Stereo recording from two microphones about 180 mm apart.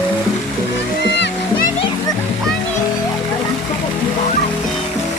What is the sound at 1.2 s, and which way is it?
Music, 50° left (ahead or behind).